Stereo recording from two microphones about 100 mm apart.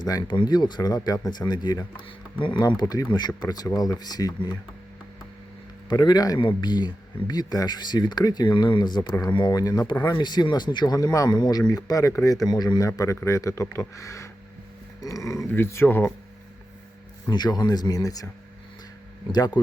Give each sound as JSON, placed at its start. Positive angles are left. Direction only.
{"t": 0.0, "sound": "speech", "side_deg": 45}
{"t": 5.9, "sound": "speech", "side_deg": 45}
{"t": 6.4, "sound": "speech", "side_deg": 50}
{"t": 13.0, "sound": "speech", "side_deg": 30}
{"t": 17.2, "sound": "speech", "side_deg": 45}
{"t": 19.3, "sound": "speech", "side_deg": 45}